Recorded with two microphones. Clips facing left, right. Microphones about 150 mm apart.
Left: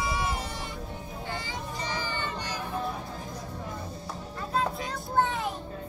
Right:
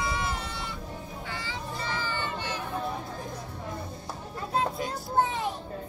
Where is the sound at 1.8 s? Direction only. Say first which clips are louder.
Right 1 dB; 15° left (ahead or behind).